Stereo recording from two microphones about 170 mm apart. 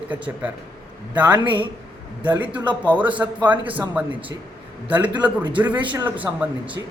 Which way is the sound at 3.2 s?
15° right (ahead or behind).